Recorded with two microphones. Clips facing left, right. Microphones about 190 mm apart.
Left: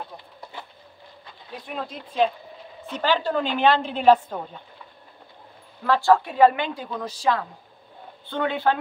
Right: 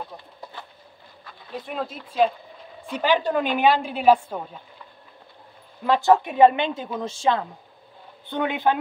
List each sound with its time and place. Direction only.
1.7 s speech: centre (ahead or behind)
2.9 s a woman's voice: 15° right (ahead or behind)
5.9 s a woman's voice: 20° right (ahead or behind)